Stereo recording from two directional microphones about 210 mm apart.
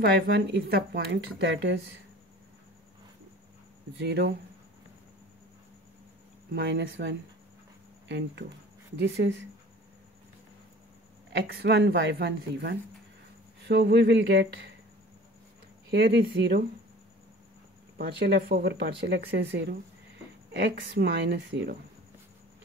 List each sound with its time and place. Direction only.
0.0 s speech: 50° right (ahead or behind)
4.0 s a woman's voice: 55° right (ahead or behind)
6.5 s a woman's voice: 55° right (ahead or behind)
8.9 s a woman's voice: 60° right (ahead or behind)
11.3 s a woman's voice: 55° right (ahead or behind)
15.9 s speech: 50° right (ahead or behind)
18.2 s a woman's voice: 50° right (ahead or behind)